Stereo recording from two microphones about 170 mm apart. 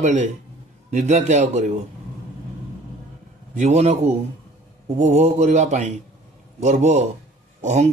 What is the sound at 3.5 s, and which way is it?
A man's voice, 40° right (ahead or behind).